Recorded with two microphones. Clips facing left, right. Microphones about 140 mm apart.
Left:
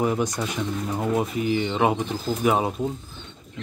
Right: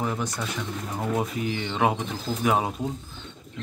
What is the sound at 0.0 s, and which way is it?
Speech, 15° left (ahead or behind).